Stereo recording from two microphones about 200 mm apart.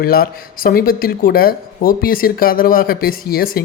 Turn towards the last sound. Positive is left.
turn(degrees=45)  # may be behind; listen again after turning